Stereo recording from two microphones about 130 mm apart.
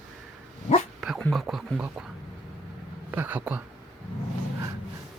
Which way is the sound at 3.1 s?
15° right (ahead or behind).